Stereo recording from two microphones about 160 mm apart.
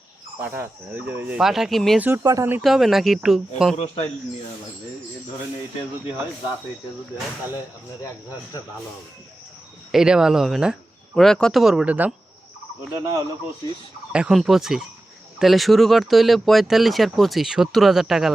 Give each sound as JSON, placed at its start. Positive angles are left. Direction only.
{"t": 0.3, "sound": "speech", "side_deg": -15}
{"t": 2.0, "sound": "speech", "side_deg": -15}
{"t": 2.6, "sound": "speech", "side_deg": 0}
{"t": 3.8, "sound": "speech", "side_deg": 40}
{"t": 9.9, "sound": "speech", "side_deg": -5}
{"t": 14.1, "sound": "speech", "side_deg": -5}